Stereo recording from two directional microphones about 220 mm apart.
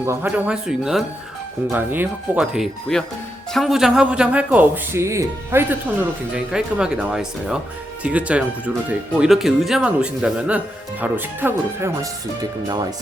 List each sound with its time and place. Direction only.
0.0 s a man's voice: 10° right (ahead or behind)